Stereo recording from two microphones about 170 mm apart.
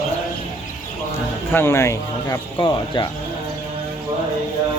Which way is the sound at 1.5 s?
15° left (ahead or behind).